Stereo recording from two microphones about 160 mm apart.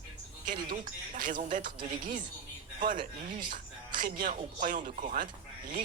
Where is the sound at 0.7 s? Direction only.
55° right (ahead or behind).